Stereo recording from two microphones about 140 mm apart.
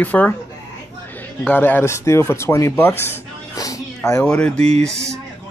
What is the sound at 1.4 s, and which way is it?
Speech, 15° left (ahead or behind).